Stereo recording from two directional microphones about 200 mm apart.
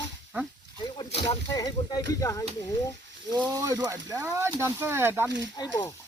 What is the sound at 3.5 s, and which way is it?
Speech, 15° right (ahead or behind).